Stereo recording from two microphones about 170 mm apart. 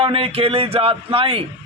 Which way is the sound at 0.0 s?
35° right (ahead or behind).